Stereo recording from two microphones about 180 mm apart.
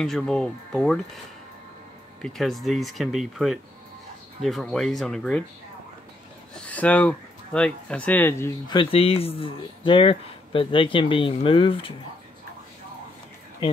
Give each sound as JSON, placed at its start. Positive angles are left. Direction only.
{"t": 0.0, "sound": "speech", "side_deg": 0}
{"t": 2.2, "sound": "speech", "side_deg": 0}
{"t": 6.5, "sound": "speech", "side_deg": 5}
{"t": 8.6, "sound": "speech", "side_deg": 30}